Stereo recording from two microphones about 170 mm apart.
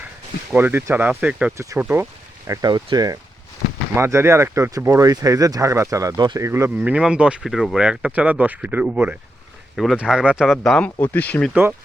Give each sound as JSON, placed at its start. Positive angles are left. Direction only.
{"t": 0.5, "sound": "speech", "side_deg": -15}
{"t": 2.5, "sound": "speech", "side_deg": -20}
{"t": 6.7, "sound": "speech", "side_deg": -5}